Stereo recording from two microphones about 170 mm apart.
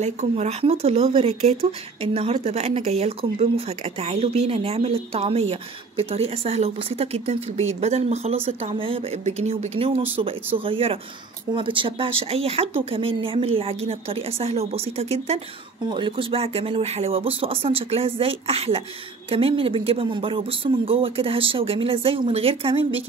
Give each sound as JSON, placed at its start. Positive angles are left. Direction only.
{"t": 0.0, "sound": "speech", "side_deg": -40}